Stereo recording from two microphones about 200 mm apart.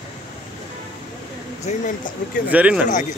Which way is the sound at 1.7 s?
35° left (ahead or behind).